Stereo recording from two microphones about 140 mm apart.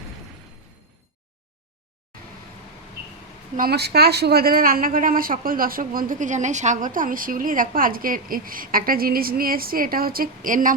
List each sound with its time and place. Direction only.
3.9 s a man's voice: 90° right; by 10.8 s 70° right (ahead or behind)